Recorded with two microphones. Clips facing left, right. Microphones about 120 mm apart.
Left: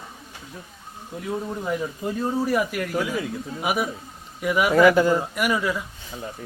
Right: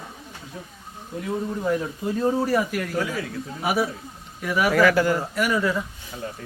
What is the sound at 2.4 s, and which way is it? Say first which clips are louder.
Speech: even; 10° left (ahead or behind).